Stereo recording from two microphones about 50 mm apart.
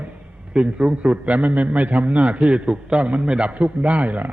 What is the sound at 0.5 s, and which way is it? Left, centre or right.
A man's voice, centre.